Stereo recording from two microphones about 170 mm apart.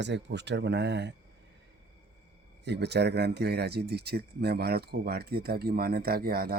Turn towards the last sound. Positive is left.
turn(degrees=-60)  # may be behind; listen again after turning